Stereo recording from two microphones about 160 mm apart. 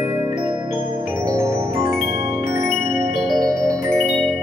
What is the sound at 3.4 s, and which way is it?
Music, 20° right (ahead or behind).